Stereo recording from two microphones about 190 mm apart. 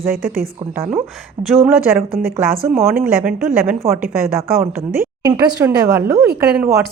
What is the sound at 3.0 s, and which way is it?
Speech, 5° right (ahead or behind).